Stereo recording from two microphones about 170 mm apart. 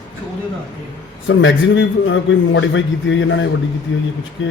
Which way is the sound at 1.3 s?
90° left.